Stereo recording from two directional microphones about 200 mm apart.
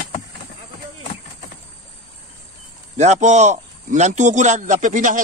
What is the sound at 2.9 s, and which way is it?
A man's voice, 35° right (ahead or behind).